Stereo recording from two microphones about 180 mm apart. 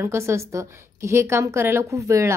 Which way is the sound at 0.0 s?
15° right (ahead or behind).